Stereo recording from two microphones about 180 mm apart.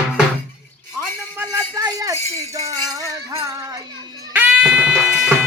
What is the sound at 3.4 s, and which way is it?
Speech, 20° right (ahead or behind).